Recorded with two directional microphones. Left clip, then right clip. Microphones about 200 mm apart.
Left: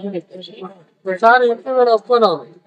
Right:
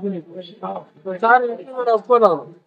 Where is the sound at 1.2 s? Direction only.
10° right (ahead or behind).